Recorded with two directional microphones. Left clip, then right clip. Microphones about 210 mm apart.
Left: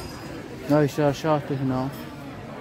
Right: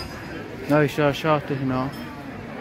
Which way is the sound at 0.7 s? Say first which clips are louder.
Right 1 dB; 20° left (ahead or behind).